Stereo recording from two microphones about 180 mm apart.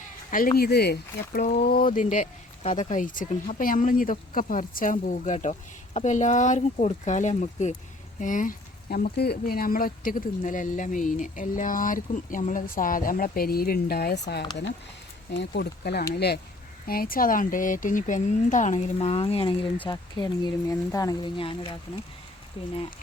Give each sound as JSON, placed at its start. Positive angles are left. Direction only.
{"t": 0.3, "sound": "speech", "side_deg": 50}